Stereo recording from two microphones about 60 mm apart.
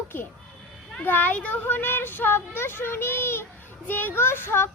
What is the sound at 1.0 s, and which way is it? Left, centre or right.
Speech, left.